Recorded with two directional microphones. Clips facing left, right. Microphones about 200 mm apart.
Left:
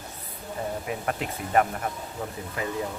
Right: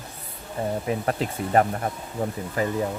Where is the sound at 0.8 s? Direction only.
35° right (ahead or behind).